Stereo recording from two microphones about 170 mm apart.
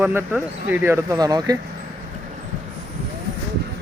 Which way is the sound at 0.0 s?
10° right (ahead or behind).